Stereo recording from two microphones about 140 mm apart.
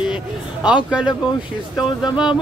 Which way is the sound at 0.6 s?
5° right (ahead or behind).